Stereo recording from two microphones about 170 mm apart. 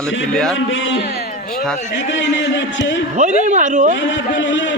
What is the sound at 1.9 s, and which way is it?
Speech, 90° left.